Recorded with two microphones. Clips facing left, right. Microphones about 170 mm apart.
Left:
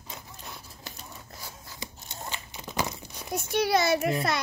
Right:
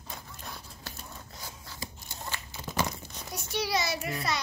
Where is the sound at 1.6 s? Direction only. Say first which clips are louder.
Even; 20° left (ahead or behind).